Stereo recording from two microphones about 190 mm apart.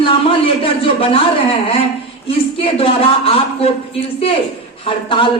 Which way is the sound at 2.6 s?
30° left (ahead or behind).